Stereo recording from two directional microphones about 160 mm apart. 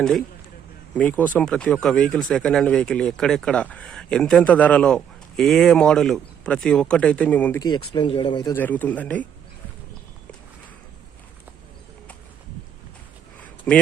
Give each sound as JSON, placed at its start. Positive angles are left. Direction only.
{"t": 0.9, "sound": "speech", "side_deg": 10}
{"t": 7.6, "sound": "speech", "side_deg": 30}
{"t": 8.5, "sound": "speech", "side_deg": 10}